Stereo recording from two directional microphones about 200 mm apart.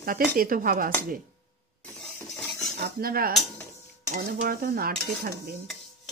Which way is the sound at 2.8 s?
45° right (ahead or behind).